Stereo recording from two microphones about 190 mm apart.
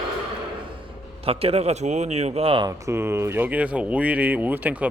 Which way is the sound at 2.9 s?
15° right (ahead or behind).